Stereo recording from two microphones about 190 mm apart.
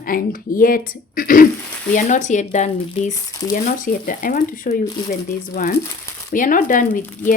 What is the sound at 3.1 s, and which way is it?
Speech, 20° left (ahead or behind).